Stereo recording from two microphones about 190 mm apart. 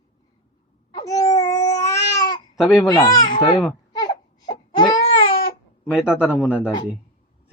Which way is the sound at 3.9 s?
20° left (ahead or behind).